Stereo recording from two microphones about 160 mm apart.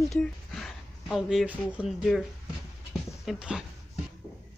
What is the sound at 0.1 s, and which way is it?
Speech, centre (ahead or behind).